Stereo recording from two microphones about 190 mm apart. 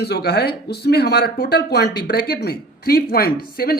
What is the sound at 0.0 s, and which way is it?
A man's voice, 60° left (ahead or behind).